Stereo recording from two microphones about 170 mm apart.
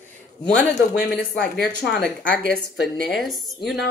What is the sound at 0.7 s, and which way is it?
Speech, 75° left (ahead or behind).